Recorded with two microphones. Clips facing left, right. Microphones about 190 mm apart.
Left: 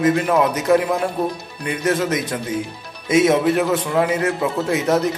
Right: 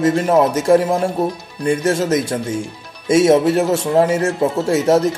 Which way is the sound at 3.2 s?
30° right (ahead or behind).